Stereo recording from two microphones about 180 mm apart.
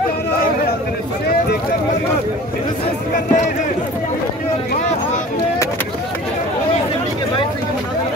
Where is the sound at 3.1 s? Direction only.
45° left (ahead or behind).